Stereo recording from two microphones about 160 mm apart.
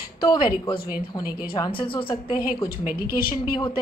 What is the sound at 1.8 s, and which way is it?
Speech, 30° left (ahead or behind).